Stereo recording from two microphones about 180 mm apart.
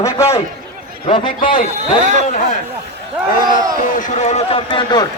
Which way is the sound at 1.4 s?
50° left (ahead or behind).